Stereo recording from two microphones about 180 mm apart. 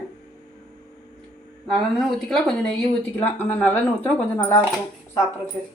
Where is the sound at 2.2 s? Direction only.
Centre (ahead or behind).